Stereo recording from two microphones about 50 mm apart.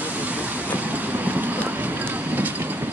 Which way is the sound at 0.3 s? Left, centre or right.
Right.